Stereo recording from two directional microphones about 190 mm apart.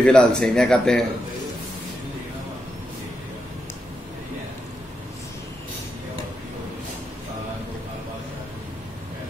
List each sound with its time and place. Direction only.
0.0 s speech: 5° left (ahead or behind)